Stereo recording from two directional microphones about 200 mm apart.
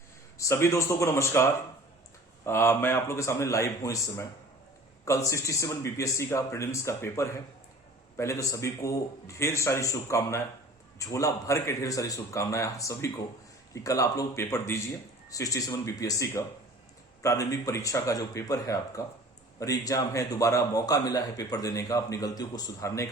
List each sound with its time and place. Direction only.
0.3 s a man's voice: 15° left (ahead or behind)